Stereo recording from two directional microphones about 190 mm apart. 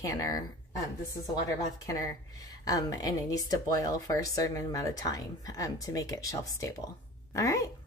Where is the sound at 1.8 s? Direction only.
15° left (ahead or behind).